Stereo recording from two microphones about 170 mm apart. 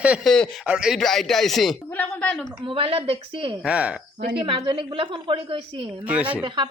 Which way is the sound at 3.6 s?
5° right (ahead or behind).